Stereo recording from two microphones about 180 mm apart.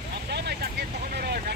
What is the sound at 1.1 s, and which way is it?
Vehicle, 60° right (ahead or behind).